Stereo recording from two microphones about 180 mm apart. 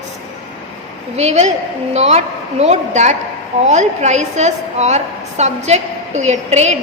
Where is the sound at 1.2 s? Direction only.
40° right (ahead or behind).